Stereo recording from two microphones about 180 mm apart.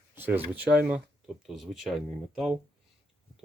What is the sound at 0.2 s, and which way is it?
Speech, 10° right (ahead or behind).